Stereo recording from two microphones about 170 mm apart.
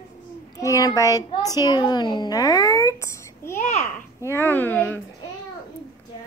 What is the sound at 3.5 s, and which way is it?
Speech, 40° left (ahead or behind).